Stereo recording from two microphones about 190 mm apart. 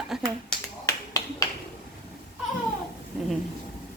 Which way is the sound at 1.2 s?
20° left (ahead or behind).